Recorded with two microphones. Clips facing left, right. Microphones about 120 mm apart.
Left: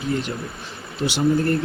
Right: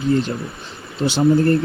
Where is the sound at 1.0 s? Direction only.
30° right (ahead or behind).